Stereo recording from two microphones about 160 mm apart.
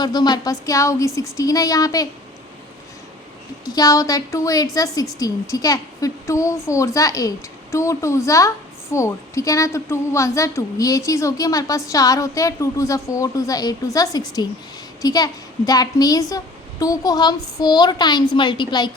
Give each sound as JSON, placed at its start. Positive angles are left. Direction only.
{"t": 0.0, "sound": "a woman's voice", "side_deg": 25}
{"t": 3.7, "sound": "a woman's voice", "side_deg": 25}